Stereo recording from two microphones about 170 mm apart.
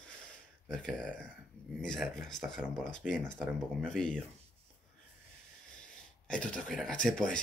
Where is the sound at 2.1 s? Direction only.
5° left (ahead or behind).